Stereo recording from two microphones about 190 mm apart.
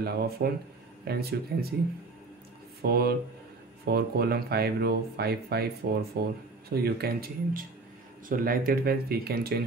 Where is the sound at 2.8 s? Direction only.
55° right (ahead or behind).